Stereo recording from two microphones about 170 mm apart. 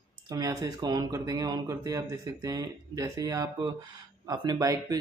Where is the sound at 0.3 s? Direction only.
20° right (ahead or behind).